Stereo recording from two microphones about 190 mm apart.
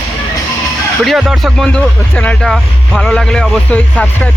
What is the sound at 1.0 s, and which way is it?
Speech, centre (ahead or behind).